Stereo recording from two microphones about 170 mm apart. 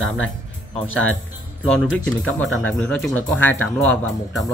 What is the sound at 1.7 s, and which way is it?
Speech, 5° left (ahead or behind).